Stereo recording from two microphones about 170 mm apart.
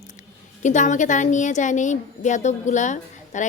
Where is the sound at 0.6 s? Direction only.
45° left (ahead or behind).